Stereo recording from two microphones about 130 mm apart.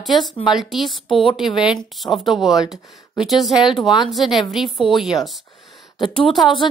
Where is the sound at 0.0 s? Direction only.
Centre (ahead or behind).